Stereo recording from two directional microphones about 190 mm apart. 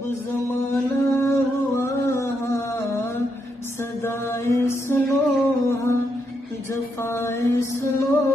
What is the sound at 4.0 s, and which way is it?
Mantra, 15° left (ahead or behind).